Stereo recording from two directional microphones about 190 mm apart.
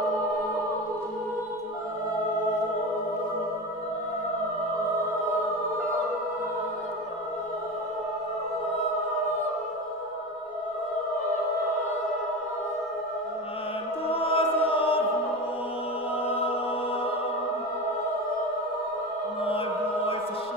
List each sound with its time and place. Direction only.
14.0 s choir: 30° left (ahead or behind)
16.3 s music: 30° left (ahead or behind)